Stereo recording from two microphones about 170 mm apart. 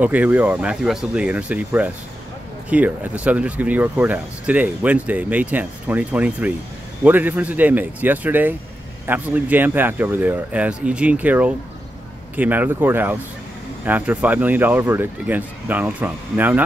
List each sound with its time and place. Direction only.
0.0 s speech: 10° right (ahead or behind)